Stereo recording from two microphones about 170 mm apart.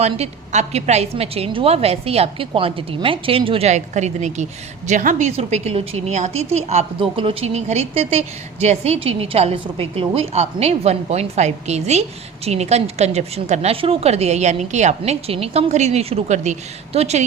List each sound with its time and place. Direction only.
0.0 s a woman's voice: 40° right (ahead or behind)